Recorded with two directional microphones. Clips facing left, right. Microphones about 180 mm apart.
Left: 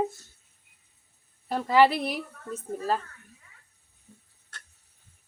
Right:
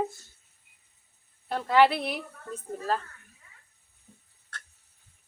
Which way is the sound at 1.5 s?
5° left (ahead or behind).